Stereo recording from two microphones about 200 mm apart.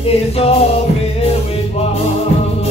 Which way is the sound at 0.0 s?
30° left (ahead or behind).